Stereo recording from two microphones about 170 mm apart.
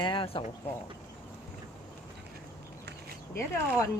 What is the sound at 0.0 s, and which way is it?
Speech, 30° left (ahead or behind).